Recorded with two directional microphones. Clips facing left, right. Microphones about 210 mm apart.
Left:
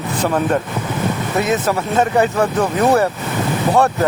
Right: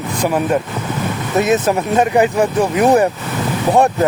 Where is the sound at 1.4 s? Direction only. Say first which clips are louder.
Right 4 dB; 15° right (ahead or behind).